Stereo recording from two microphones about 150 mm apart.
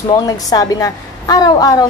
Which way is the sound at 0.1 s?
25° left (ahead or behind).